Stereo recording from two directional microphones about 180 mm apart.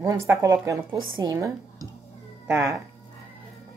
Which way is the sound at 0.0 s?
15° right (ahead or behind).